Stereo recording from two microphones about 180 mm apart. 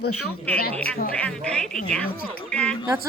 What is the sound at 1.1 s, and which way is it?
A woman's voice, 5° left (ahead or behind).